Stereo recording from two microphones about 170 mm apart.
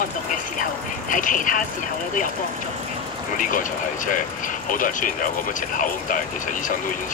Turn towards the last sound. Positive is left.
turn(degrees=50)  # may be behind; listen again after turning